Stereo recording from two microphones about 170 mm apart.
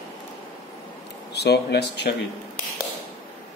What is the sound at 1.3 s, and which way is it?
Speech, 75° left (ahead or behind).